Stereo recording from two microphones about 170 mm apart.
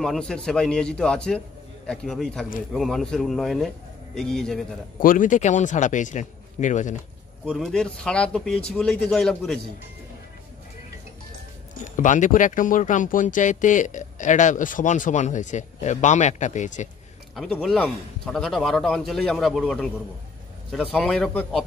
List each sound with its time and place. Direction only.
0.0 s a man's voice: 5° left (ahead or behind)
5.0 s speech: 50° left (ahead or behind)
7.4 s a man's voice: 5° left (ahead or behind)
11.8 s speech: 50° left (ahead or behind)
17.4 s a man's voice: centre (ahead or behind)